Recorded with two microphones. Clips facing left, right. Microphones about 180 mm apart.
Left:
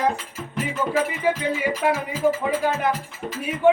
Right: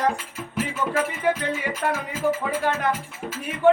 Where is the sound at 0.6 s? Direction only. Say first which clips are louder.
Even; centre (ahead or behind).